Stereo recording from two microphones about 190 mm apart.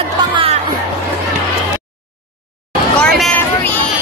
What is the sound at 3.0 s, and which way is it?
Hubbub, 5° left (ahead or behind).